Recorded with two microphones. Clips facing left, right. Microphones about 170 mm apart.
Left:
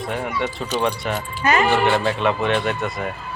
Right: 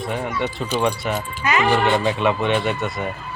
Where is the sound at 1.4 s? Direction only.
45° left (ahead or behind).